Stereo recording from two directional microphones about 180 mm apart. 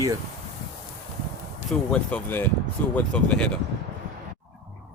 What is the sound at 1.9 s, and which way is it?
Speech, 5° left (ahead or behind).